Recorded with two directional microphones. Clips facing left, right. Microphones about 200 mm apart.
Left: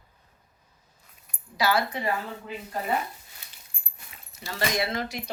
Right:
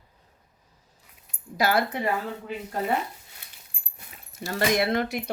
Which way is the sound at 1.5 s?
55° right (ahead or behind).